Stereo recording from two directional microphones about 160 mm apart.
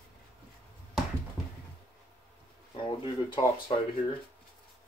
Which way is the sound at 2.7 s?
30° left (ahead or behind).